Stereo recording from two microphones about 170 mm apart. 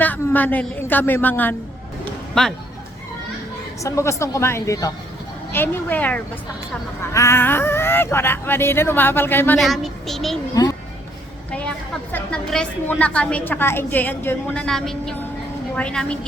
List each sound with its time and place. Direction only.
0.0 s a woman's voice: 10° left (ahead or behind)
3.8 s a woman's voice: 15° left (ahead or behind)
9.6 s a child's voice: centre (ahead or behind)
10.5 s a child's voice: 20° left (ahead or behind)
12.1 s a woman's voice: 5° left (ahead or behind)